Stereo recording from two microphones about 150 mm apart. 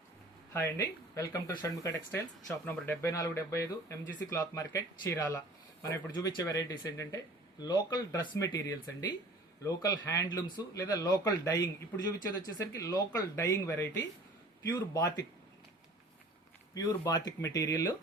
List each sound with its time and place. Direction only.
0.5 s speech: 20° left (ahead or behind)
16.7 s speech: 25° left (ahead or behind)